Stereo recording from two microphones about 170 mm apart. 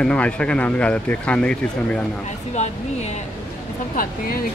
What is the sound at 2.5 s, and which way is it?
Speech, 40° left (ahead or behind).